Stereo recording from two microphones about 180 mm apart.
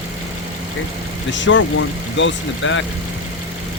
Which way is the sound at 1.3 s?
90° left.